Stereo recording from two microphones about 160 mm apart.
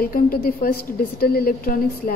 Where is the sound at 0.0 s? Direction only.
65° left (ahead or behind).